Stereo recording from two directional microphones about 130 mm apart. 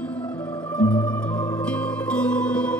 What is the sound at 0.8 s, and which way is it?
Music, 10° left (ahead or behind).